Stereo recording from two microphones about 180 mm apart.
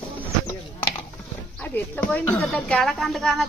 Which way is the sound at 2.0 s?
10° left (ahead or behind).